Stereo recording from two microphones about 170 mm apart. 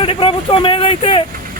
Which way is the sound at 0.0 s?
30° left (ahead or behind).